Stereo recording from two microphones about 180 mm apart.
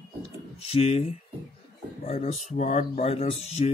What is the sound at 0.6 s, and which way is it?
Speech, 35° left (ahead or behind).